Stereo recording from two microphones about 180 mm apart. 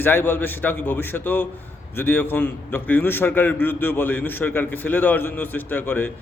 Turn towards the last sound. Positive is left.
turn(degrees=10)  # may be behind; listen again after turning